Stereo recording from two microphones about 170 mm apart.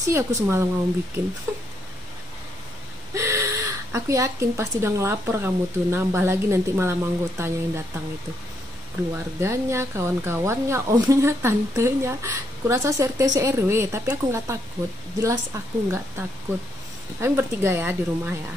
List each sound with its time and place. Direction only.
0.1 s speech: 15° right (ahead or behind)
1.5 s a sound: 15° right (ahead or behind)
3.2 s speech: 15° right (ahead or behind)
9.1 s speech: 15° right (ahead or behind)